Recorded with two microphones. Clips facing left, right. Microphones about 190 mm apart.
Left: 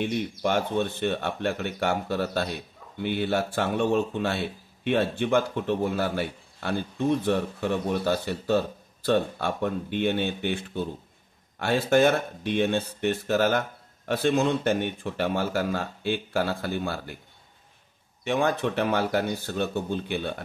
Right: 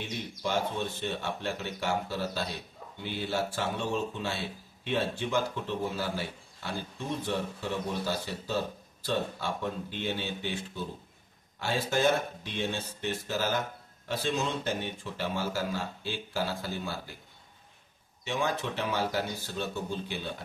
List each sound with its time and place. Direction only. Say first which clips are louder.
0.0 s speech: left 8 dB; 60° left (ahead or behind)
18.2 s speech: left 7 dB; 55° left (ahead or behind)